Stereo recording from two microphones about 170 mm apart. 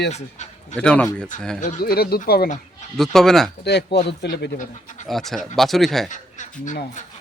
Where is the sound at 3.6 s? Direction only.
80° left.